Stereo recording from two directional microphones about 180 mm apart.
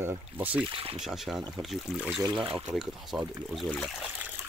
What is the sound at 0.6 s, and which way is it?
Speech, 30° right (ahead or behind).